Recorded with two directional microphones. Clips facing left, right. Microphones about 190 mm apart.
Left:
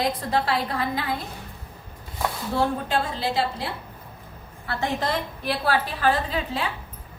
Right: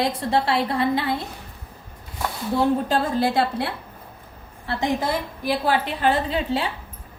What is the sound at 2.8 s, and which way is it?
Speech, 45° right (ahead or behind).